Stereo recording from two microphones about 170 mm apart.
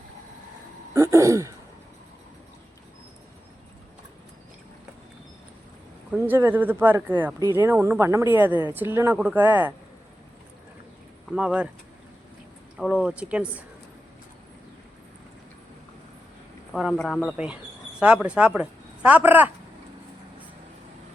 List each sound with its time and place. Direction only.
0.9 s throat clearing: 15° right (ahead or behind)
6.1 s speech: 10° right (ahead or behind)
11.3 s speech: 5° right (ahead or behind)
12.8 s speech: 5° right (ahead or behind)
16.7 s speech: centre (ahead or behind)